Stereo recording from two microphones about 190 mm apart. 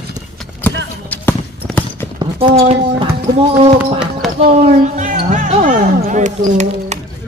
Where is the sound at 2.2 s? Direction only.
25° right (ahead or behind).